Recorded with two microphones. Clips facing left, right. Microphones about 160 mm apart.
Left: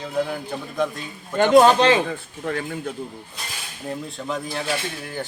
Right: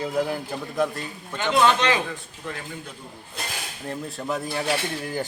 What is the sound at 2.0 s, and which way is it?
Speech, 55° left (ahead or behind).